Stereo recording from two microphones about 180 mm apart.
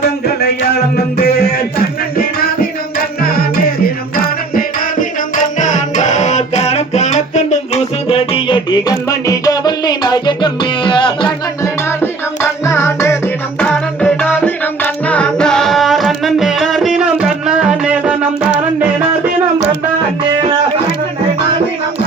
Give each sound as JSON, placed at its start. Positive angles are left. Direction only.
{"t": 0.3, "sound": "music", "side_deg": 60}
{"t": 3.2, "sound": "music", "side_deg": 55}
{"t": 11.9, "sound": "music", "side_deg": 15}